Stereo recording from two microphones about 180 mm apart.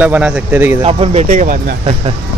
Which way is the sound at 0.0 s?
5° right (ahead or behind).